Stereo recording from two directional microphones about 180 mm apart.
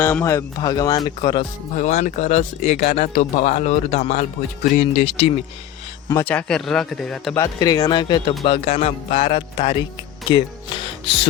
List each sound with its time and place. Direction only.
0.0 s speech: 10° left (ahead or behind)
1.7 s speech: 40° left (ahead or behind)
6.1 s speech: 10° left (ahead or behind)
7.3 s speech: 20° left (ahead or behind)
11.0 s music: 30° left (ahead or behind)